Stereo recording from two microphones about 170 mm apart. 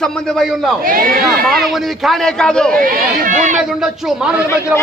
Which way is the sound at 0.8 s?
55° right (ahead or behind).